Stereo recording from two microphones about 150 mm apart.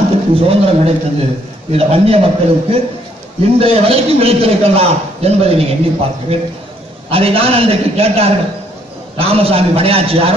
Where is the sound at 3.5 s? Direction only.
40° right (ahead or behind).